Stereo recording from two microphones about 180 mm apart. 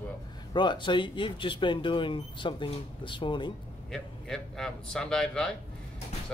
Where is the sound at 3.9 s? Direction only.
5° left (ahead or behind).